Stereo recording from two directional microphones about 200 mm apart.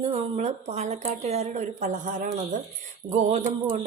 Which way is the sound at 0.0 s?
30° right (ahead or behind).